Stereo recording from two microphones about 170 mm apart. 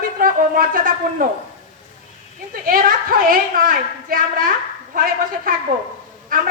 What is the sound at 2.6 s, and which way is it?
A woman's voice, 55° right (ahead or behind).